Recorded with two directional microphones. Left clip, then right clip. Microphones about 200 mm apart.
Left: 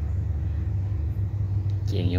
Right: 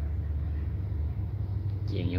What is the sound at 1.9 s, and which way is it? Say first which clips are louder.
Vehicle: left 4 dB; 20° left (ahead or behind).